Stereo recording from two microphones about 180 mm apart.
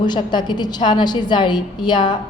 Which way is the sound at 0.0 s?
25° left (ahead or behind).